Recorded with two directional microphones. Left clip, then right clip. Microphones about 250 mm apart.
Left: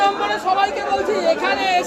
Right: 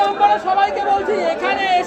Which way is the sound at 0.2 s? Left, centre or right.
Centre.